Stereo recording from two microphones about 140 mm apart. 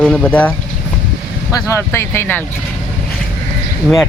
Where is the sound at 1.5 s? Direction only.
20° left (ahead or behind).